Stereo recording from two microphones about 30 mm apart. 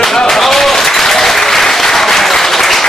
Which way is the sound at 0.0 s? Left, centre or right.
Centre.